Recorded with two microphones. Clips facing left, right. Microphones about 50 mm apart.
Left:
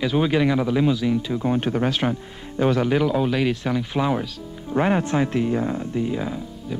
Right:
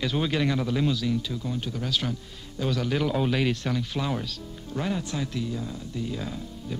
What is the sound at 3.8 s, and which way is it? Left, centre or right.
Speech, left.